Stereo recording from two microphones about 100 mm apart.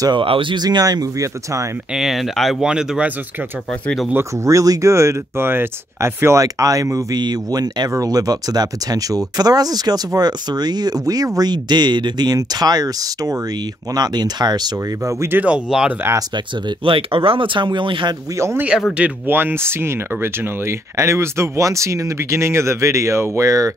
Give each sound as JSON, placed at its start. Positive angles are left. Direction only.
{"t": 0.1, "sound": "speech", "side_deg": -60}
{"t": 2.0, "sound": "speech", "side_deg": 0}
{"t": 4.1, "sound": "speech", "side_deg": -30}
{"t": 7.2, "sound": "speech", "side_deg": -45}
{"t": 15.1, "sound": "speech", "side_deg": -20}
{"t": 15.5, "sound": "speech", "side_deg": -5}
{"t": 16.8, "sound": "speech", "side_deg": -60}
{"t": 18.4, "sound": "speech", "side_deg": -25}